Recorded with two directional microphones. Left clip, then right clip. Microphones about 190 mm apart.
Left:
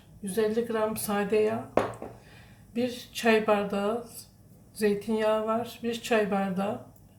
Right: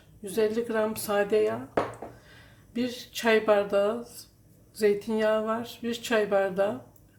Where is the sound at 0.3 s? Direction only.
50° right (ahead or behind).